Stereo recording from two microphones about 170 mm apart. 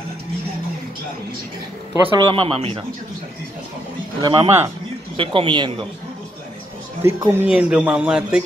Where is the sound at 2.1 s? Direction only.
30° right (ahead or behind).